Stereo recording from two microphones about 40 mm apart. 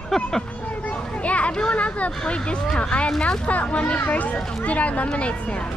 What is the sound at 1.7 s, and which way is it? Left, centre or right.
Speech, left.